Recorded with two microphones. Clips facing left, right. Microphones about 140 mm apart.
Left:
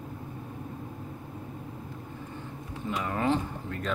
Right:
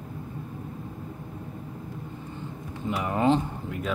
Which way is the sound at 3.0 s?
20° right (ahead or behind).